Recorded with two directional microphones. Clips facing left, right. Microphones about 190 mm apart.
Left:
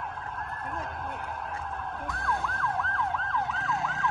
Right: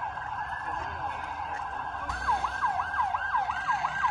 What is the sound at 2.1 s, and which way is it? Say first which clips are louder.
Emergency vehicle: even; centre (ahead or behind).